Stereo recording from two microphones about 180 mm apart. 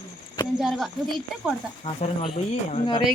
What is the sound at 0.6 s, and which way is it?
Speech, centre (ahead or behind).